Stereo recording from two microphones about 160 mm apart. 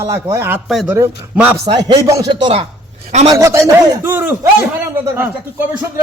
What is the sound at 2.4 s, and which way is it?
Speech, 35° right (ahead or behind).